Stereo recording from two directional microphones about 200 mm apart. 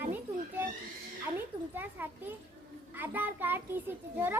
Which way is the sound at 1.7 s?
10° right (ahead or behind).